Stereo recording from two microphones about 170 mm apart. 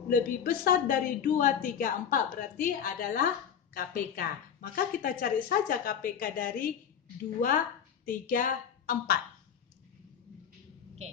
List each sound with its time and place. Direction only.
0.1 s a woman's voice: 60° left (ahead or behind)
8.0 s a woman's voice: 50° left (ahead or behind)